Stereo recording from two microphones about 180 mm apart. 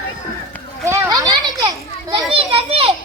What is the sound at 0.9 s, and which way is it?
Children playing, 15° right (ahead or behind).